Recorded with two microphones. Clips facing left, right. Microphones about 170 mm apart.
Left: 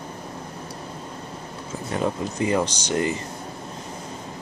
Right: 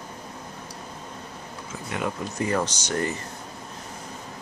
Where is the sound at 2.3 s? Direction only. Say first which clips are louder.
Left 3 dB; 20° left (ahead or behind).